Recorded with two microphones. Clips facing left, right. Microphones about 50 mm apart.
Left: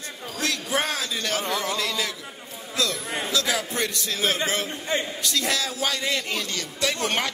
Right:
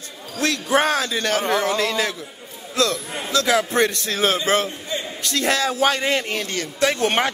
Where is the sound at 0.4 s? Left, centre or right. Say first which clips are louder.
Right 7 dB; right.